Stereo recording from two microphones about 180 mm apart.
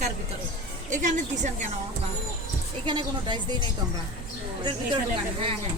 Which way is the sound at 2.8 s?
25° right (ahead or behind).